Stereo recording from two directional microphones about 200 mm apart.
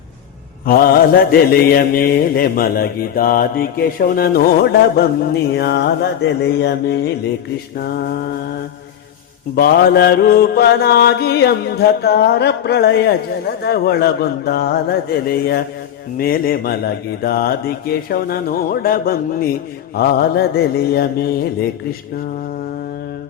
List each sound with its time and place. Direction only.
0.6 s mantra: 50° left (ahead or behind)
9.6 s mantra: 50° left (ahead or behind)